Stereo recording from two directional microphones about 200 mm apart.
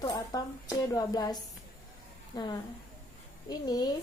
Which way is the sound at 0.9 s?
20° left (ahead or behind).